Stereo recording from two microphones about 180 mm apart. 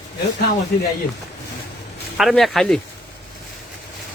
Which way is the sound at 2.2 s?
Centre (ahead or behind).